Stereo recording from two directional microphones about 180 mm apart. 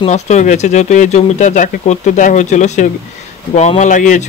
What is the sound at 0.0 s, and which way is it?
A man's voice, 40° left (ahead or behind).